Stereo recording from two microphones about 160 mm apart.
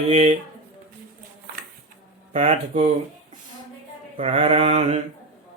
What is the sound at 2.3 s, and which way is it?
Speech, 45° right (ahead or behind).